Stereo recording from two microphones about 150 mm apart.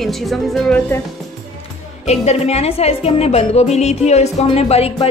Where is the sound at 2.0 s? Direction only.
45° left (ahead or behind).